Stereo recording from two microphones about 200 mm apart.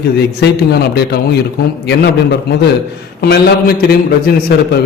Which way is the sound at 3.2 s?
50° left (ahead or behind).